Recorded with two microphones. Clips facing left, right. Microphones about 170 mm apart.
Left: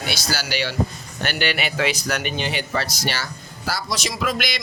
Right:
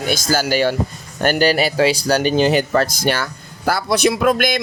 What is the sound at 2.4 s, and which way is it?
Speech, 45° right (ahead or behind).